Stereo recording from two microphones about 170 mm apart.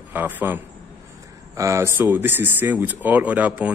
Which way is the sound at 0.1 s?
10° right (ahead or behind).